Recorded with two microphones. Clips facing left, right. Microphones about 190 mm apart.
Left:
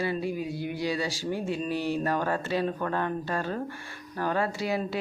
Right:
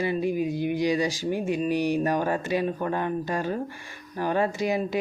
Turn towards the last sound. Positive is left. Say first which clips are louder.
# right 4 dB
turn(degrees=-20)  # may be behind; listen again after turning